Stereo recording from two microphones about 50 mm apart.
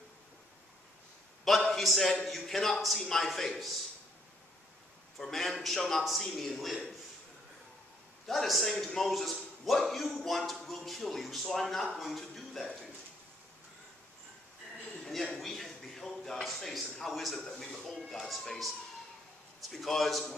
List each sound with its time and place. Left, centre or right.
1.5 s a man's voice: centre
5.2 s a man's voice: centre
8.3 s a man's voice: centre
15.3 s a sound: centre
16.4 s a man's voice: centre
19.7 s a man's voice: centre